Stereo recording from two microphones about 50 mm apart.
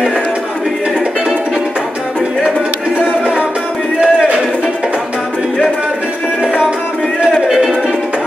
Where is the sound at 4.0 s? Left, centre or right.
Centre.